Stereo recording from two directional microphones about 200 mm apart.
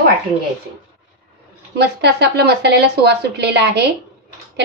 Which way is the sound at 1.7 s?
55° right (ahead or behind).